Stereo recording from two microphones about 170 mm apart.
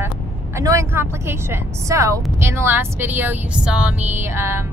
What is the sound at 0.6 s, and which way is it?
Speech, 15° right (ahead or behind).